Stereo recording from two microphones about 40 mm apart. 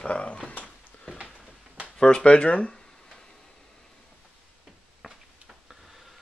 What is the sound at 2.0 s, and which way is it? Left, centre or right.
Speech, left.